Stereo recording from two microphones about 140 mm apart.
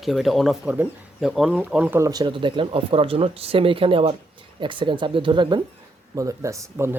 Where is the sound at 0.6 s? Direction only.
10° right (ahead or behind).